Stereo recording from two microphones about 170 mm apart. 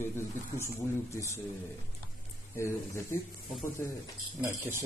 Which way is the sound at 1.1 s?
15° left (ahead or behind).